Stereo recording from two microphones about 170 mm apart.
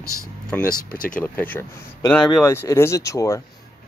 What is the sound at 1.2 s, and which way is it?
Speech, 10° left (ahead or behind).